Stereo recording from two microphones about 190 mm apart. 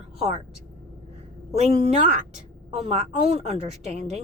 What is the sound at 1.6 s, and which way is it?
A woman's voice, 35° right (ahead or behind).